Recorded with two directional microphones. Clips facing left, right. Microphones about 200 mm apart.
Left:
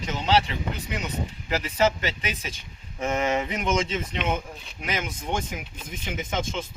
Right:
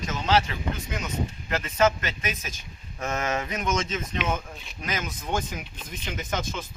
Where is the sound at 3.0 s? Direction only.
15° left (ahead or behind).